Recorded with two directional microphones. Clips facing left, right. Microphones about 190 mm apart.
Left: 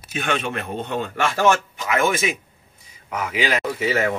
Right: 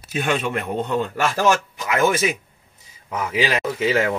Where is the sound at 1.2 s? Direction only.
40° right (ahead or behind).